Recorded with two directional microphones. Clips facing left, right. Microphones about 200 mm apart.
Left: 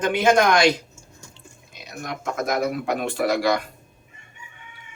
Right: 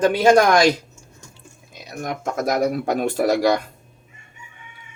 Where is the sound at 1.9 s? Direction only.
40° right (ahead or behind).